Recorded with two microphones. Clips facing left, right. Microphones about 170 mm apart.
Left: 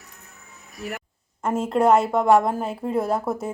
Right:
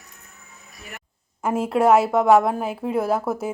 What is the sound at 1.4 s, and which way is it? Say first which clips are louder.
Speech: right 1 dB; 10° right (ahead or behind).